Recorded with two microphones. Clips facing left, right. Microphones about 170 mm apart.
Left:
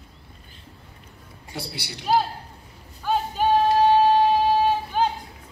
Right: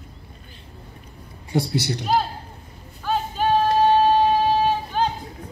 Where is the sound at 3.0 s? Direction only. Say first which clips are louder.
Even; 10° left (ahead or behind).